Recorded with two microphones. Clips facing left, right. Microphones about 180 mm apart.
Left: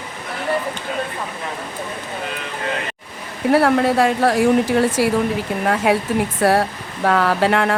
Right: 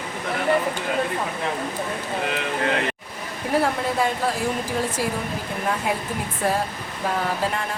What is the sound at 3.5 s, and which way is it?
Speech, 75° left (ahead or behind).